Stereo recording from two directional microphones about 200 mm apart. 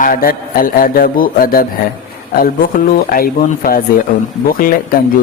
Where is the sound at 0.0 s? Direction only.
45° left (ahead or behind).